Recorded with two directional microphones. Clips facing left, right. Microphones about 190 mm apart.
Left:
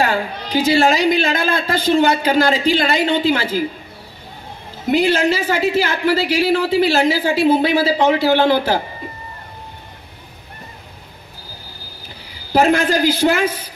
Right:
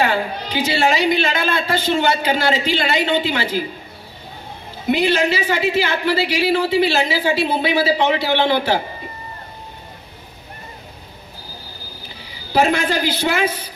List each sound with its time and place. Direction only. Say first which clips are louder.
0.0 s a woman's voice: even; 40° left (ahead or behind)
4.9 s a woman's voice: left 3 dB; 45° left (ahead or behind)
12.5 s a woman's voice: left 3 dB; 45° left (ahead or behind)